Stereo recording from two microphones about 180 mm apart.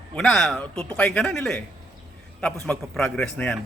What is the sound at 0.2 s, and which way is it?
A man's voice, centre (ahead or behind).